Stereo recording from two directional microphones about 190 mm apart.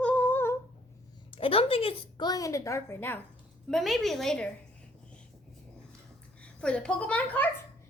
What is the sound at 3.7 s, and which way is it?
Speech, centre (ahead or behind).